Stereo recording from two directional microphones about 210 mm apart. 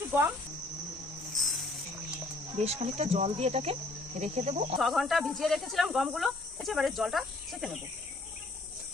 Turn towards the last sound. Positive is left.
turn(degrees=0)  # may be behind; listen again after turning